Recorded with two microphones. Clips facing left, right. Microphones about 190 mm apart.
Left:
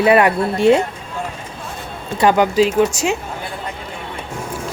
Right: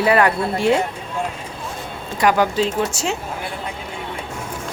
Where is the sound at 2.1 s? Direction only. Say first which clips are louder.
Left 4 dB; 25° left (ahead or behind).